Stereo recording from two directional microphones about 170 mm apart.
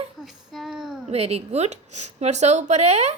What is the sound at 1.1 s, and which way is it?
A woman's voice, 40° right (ahead or behind).